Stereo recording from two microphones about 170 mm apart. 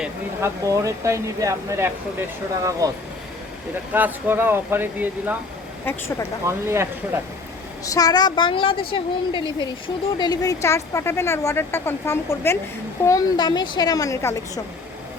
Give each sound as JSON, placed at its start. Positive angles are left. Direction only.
{"t": 0.4, "sound": "speech", "side_deg": -20}
{"t": 5.8, "sound": "a woman's voice", "side_deg": 15}
{"t": 6.4, "sound": "speech", "side_deg": -15}
{"t": 7.9, "sound": "a woman's voice", "side_deg": 20}